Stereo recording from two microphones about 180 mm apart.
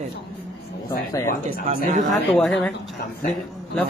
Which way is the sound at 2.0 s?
Centre (ahead or behind).